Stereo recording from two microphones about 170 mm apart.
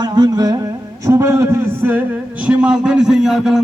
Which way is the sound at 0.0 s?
25° right (ahead or behind).